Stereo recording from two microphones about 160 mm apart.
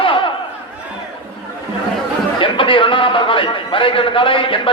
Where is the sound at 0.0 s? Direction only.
35° left (ahead or behind).